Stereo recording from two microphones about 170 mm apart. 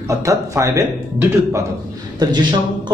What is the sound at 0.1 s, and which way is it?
Speech, 20° right (ahead or behind).